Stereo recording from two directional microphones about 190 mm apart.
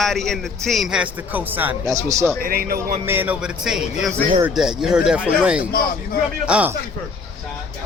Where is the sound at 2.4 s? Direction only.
50° right (ahead or behind).